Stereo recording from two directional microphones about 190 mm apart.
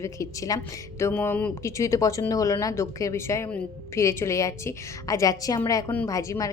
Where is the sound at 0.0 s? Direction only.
15° left (ahead or behind).